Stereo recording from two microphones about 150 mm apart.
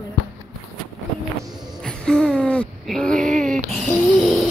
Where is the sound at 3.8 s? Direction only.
Centre (ahead or behind).